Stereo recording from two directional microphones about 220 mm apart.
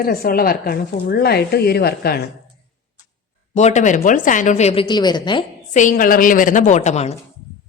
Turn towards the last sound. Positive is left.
turn(degrees=30)  # may be behind; listen again after turning